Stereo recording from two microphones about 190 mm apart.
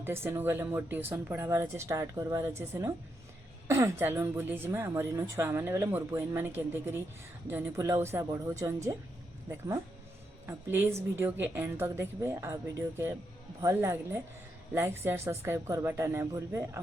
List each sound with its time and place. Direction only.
0.0 s a woman's voice: 10° right (ahead or behind)
13.6 s a woman's voice: 15° right (ahead or behind)